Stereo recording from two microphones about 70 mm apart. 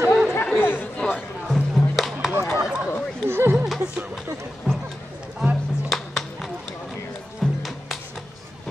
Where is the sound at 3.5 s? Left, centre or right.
Centre.